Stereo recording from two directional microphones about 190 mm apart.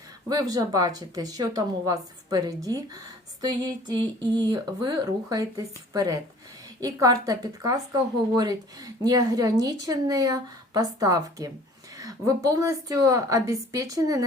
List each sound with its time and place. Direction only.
0.3 s a woman's voice: 20° right (ahead or behind)